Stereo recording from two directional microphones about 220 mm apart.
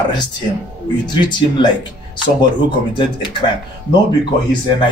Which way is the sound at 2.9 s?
20° left (ahead or behind).